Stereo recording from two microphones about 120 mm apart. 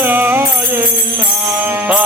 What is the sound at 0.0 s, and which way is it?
Music, 15° right (ahead or behind).